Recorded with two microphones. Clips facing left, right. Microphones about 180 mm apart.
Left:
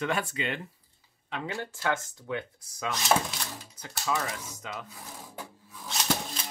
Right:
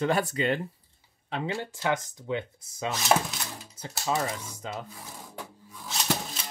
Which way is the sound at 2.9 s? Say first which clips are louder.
Right 1 dB; centre (ahead or behind).